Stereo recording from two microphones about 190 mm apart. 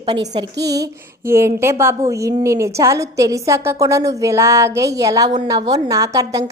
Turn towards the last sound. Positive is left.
turn(degrees=-15)  # may be behind; listen again after turning